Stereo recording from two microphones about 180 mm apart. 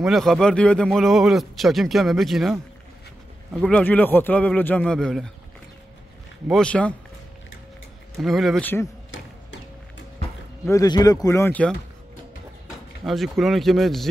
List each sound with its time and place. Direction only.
0.0 s a man's voice: centre (ahead or behind)
3.6 s a man's voice: 5° left (ahead or behind)
6.4 s a man's voice: 5° left (ahead or behind)
8.2 s a man's voice: centre (ahead or behind)
10.7 s a man's voice: 20° left (ahead or behind)
12.6 s speech: centre (ahead or behind)